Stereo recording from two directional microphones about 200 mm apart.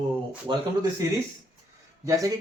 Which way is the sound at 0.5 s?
25° right (ahead or behind).